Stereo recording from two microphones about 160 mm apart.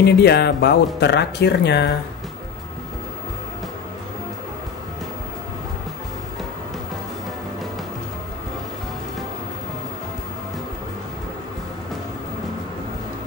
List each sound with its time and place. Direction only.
0.0 s speech: 90° left